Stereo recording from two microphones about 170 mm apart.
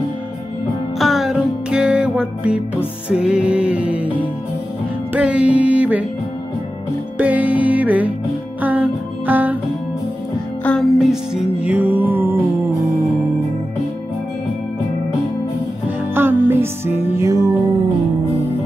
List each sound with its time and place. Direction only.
0.9 s music: centre (ahead or behind)
5.1 s music: 5° right (ahead or behind)
7.2 s music: 10° right (ahead or behind)
10.6 s music: 5° left (ahead or behind); by 12.4 s 10° right (ahead or behind)
16.2 s music: 15° right (ahead or behind)